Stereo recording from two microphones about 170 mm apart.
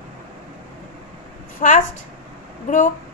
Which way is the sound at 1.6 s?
50° left (ahead or behind).